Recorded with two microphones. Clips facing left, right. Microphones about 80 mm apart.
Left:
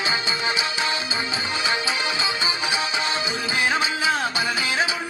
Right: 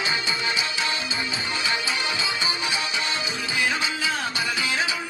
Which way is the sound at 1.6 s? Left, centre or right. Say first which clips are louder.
Left 2 dB; left.